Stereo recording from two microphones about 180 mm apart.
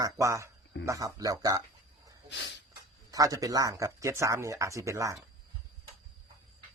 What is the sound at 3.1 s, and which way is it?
Speech, 20° right (ahead or behind).